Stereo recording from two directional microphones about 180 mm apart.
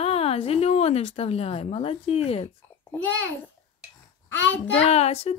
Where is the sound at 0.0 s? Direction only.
35° left (ahead or behind).